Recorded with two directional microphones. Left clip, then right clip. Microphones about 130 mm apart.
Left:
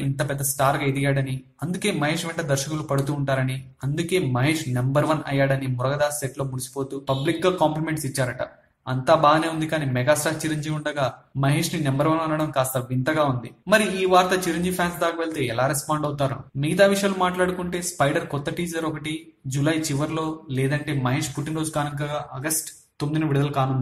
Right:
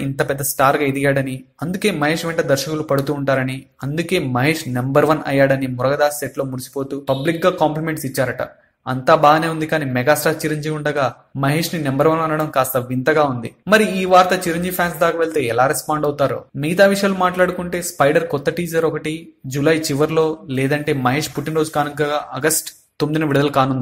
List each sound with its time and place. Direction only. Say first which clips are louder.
0.2 s speech: right 7 dB; 35° right (ahead or behind)
22.0 s speech: right 10 dB; 55° right (ahead or behind)